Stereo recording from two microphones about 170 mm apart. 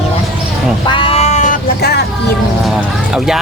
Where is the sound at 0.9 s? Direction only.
30° left (ahead or behind).